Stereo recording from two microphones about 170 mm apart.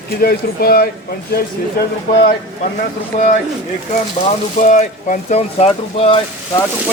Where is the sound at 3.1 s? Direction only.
45° left (ahead or behind).